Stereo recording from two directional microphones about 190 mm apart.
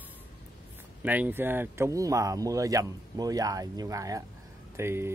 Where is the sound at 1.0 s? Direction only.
10° right (ahead or behind).